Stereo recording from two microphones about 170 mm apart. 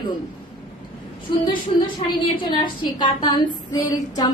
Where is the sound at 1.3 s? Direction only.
25° left (ahead or behind).